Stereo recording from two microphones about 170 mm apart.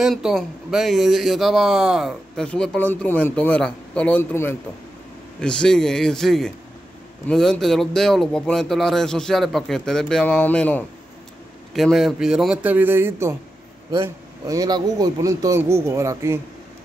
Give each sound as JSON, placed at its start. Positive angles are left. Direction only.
{"t": 0.0, "sound": "a man's voice", "side_deg": 0}